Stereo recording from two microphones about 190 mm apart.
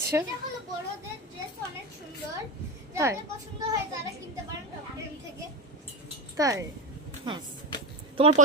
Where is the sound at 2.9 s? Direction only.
15° right (ahead or behind).